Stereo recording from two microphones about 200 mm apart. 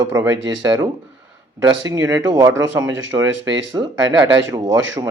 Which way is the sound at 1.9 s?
15° right (ahead or behind).